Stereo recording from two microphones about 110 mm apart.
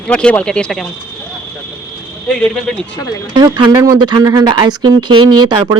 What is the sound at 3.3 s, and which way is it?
Speech, 45° right (ahead or behind).